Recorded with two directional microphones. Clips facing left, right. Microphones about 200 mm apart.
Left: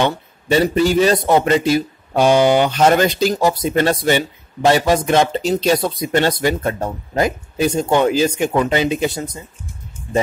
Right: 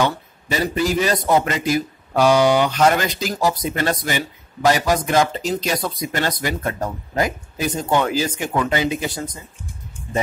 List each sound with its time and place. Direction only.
0.0 s a man's voice: 30° left (ahead or behind)